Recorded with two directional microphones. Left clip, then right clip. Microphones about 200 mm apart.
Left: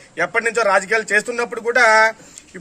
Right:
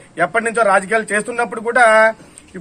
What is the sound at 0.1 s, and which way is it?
A man's voice, 15° left (ahead or behind).